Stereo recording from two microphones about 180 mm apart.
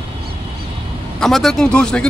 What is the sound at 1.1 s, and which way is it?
Speech, centre (ahead or behind).